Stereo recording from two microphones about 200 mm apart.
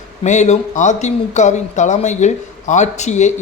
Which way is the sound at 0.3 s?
35° left (ahead or behind).